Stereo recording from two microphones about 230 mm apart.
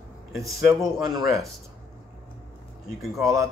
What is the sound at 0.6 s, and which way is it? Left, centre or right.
Speech, centre.